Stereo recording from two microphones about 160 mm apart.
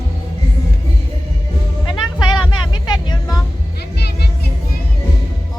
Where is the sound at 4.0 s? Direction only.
90° left.